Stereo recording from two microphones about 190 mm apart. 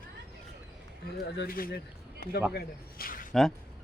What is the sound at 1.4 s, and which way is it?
A man's voice, 50° left (ahead or behind).